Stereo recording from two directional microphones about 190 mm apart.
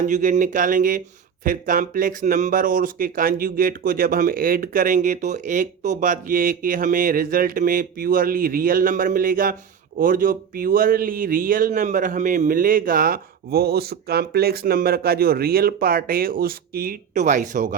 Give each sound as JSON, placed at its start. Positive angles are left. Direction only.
{"t": 0.1, "sound": "speech", "side_deg": -40}